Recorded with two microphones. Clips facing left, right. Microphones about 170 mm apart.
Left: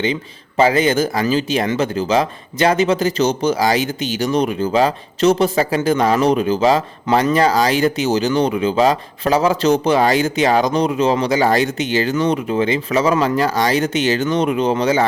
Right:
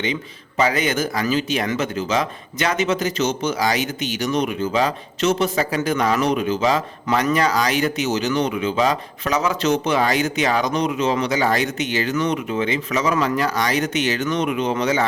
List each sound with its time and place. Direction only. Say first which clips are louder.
0.0 s speech: left 4 dB; 30° left (ahead or behind)